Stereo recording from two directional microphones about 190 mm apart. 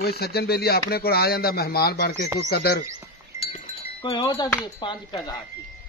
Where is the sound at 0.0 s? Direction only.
55° left (ahead or behind).